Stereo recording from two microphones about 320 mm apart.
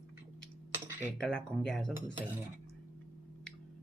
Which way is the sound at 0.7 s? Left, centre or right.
Centre.